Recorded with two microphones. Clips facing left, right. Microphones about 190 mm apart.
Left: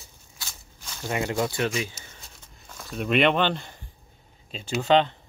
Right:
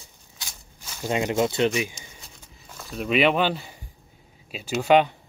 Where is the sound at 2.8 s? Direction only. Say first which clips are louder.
Right 1 dB; centre (ahead or behind).